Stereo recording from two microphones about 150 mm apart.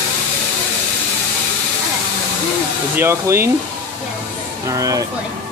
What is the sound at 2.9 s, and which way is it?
Speech, 15° right (ahead or behind).